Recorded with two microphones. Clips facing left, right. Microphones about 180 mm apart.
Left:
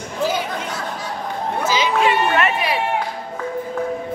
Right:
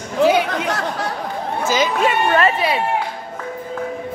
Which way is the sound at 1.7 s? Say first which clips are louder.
Right 1 dB; 45° right (ahead or behind).